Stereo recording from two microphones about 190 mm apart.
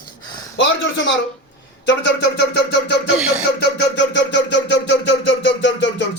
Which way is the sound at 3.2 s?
5° right (ahead or behind).